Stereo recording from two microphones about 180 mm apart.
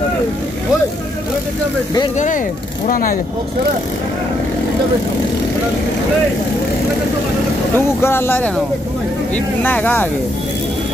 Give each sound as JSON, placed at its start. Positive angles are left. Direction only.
{"t": 2.1, "sound": "speech", "side_deg": 45}
{"t": 7.7, "sound": "speech", "side_deg": 15}